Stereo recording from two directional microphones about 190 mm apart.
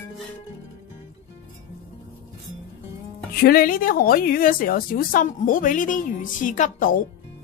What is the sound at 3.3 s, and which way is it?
A woman's voice, 50° left (ahead or behind).